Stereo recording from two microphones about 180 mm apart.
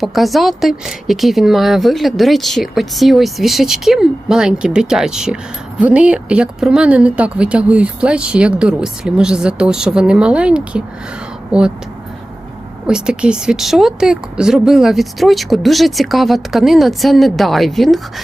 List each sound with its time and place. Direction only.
0.0 s speech: centre (ahead or behind)
12.9 s speech: 5° right (ahead or behind)